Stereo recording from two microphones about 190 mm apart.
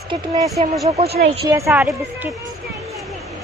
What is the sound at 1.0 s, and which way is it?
Speech, 55° right (ahead or behind).